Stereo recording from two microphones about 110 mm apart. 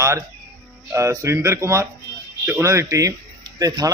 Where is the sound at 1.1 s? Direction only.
25° right (ahead or behind).